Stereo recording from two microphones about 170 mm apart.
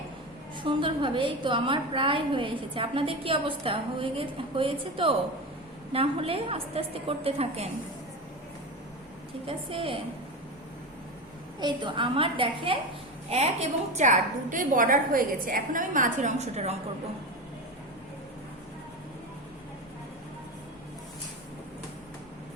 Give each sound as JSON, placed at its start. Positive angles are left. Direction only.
{"t": 0.6, "sound": "a woman's voice", "side_deg": -30}
{"t": 9.5, "sound": "a woman's voice", "side_deg": -30}
{"t": 11.6, "sound": "a woman's voice", "side_deg": -30}